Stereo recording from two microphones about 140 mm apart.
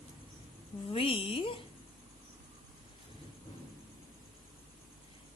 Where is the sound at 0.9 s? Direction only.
40° left (ahead or behind).